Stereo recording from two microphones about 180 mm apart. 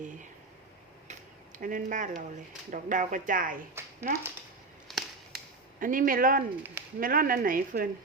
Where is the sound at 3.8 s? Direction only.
15° right (ahead or behind).